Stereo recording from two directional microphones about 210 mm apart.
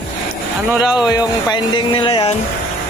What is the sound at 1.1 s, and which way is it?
Speech, 20° left (ahead or behind).